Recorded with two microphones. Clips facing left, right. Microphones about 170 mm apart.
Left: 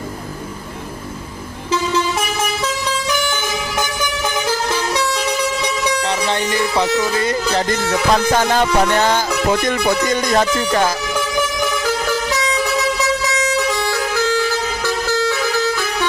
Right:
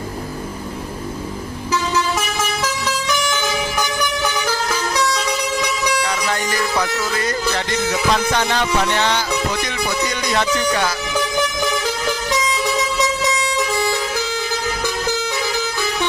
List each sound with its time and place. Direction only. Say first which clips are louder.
6.0 s music: left 3 dB; 25° left (ahead or behind)
7.7 s music: left 1 dB; 45° left (ahead or behind)